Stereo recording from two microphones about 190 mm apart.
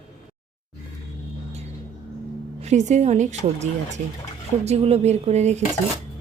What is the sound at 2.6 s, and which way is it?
A woman's voice, 35° right (ahead or behind).